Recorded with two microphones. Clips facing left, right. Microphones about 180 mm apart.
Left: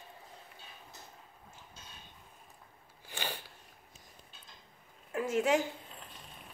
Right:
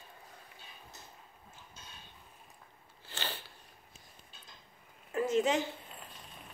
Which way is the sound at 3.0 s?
15° left (ahead or behind).